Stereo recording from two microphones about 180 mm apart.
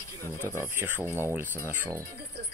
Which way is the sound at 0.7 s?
10° right (ahead or behind).